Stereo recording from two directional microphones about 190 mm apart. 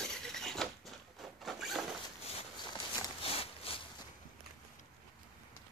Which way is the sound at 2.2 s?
25° left (ahead or behind).